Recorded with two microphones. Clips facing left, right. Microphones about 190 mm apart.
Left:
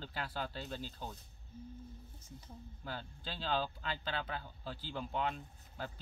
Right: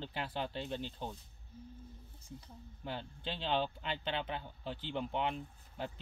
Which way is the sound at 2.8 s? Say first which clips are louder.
Right 4 dB; 25° right (ahead or behind).